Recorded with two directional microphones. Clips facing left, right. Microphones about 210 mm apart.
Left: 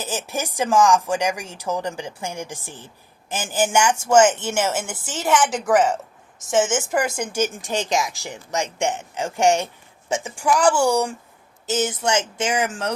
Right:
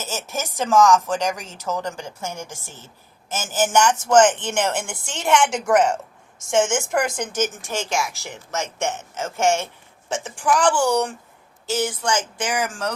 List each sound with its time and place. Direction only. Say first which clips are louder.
0.0 s speech: left 2 dB; 15° left (ahead or behind)
11.6 s speech: left 1 dB; 20° left (ahead or behind)